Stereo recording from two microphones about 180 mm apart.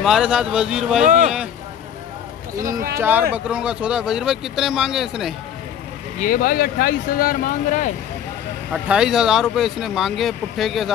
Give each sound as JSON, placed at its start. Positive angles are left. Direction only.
{"t": 0.0, "sound": "speech", "side_deg": -5}
{"t": 1.0, "sound": "speech", "side_deg": -45}
{"t": 2.6, "sound": "speech", "side_deg": -50}
{"t": 3.0, "sound": "speech", "side_deg": -10}
{"t": 6.1, "sound": "speech", "side_deg": 50}
{"t": 8.8, "sound": "speech", "side_deg": -5}